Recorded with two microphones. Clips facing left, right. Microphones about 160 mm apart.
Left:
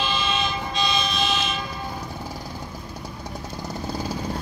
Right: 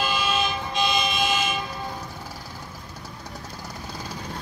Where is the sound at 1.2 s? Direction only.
10° right (ahead or behind).